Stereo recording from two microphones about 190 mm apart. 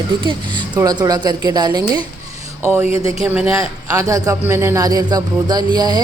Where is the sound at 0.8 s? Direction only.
20° right (ahead or behind).